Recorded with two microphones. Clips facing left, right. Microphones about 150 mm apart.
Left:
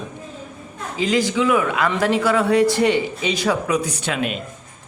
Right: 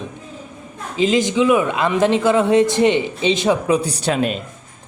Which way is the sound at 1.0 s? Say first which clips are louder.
Right 3 dB; 20° right (ahead or behind).